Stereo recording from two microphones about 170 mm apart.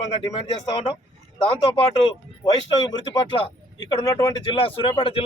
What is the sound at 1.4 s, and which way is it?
Speech, 25° left (ahead or behind).